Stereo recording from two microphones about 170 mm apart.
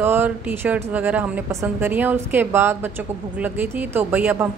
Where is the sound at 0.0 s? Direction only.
10° right (ahead or behind).